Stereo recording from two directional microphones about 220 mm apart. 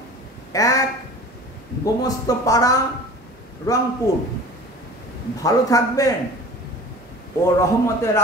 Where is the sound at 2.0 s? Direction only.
15° left (ahead or behind).